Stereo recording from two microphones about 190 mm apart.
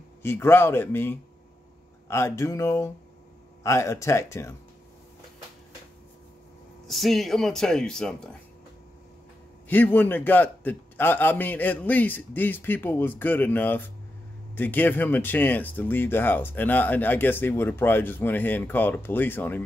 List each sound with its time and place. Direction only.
0.2 s speech: 10° left (ahead or behind)
6.9 s speech: centre (ahead or behind)
9.7 s speech: 10° left (ahead or behind)